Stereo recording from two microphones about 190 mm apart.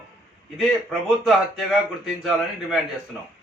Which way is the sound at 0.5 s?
Centre (ahead or behind).